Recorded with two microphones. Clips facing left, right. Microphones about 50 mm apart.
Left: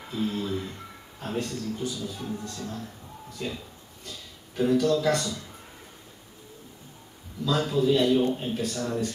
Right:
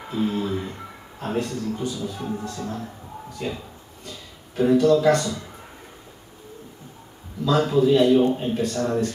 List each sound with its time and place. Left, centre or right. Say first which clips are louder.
0.0 s speech: right 5 dB; centre
1.5 s a man's voice: right 4 dB; centre
7.4 s a man's voice: right 5 dB; centre